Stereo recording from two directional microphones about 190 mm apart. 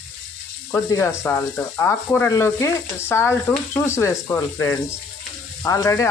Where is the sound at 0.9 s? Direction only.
15° left (ahead or behind).